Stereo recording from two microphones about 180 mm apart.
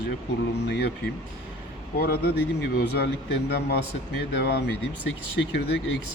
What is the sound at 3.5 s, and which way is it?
Speech, 65° left (ahead or behind).